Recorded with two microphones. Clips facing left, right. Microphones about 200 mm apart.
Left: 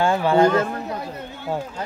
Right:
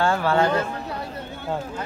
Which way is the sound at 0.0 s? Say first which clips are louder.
Left 3 dB; 15° left (ahead or behind).